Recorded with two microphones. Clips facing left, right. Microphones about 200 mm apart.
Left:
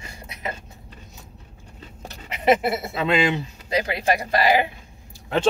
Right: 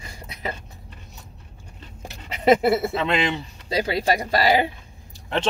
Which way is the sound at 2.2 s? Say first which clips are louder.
Right 2 dB; 30° right (ahead or behind).